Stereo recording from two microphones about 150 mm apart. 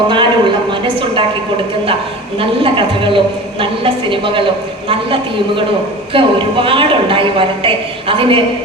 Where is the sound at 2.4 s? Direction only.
35° right (ahead or behind).